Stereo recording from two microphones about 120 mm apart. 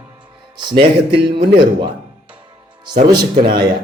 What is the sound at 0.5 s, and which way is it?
A man's voice, 40° right (ahead or behind).